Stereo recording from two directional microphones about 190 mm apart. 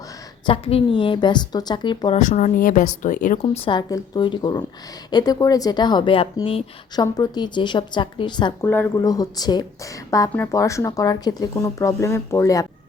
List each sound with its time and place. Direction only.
0.4 s speech: 30° left (ahead or behind)
2.1 s speech: 40° left (ahead or behind)
3.4 s speech: 30° left (ahead or behind)
8.6 s speech: 10° left (ahead or behind)